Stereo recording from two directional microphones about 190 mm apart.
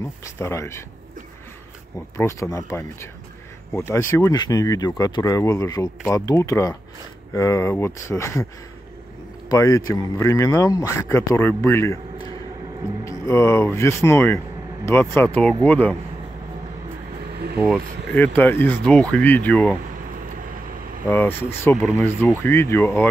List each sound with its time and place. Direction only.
0.4 s speech: 15° left (ahead or behind)
2.1 s speech: 15° left (ahead or behind)
9.5 s speech: 20° left (ahead or behind)
13.0 s speech: 15° left (ahead or behind)
18.1 s speech: 10° left (ahead or behind)
21.1 s speech: 10° left (ahead or behind)